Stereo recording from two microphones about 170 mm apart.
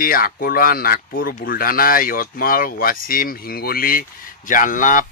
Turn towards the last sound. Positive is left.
turn(degrees=50)  # may be behind; listen again after turning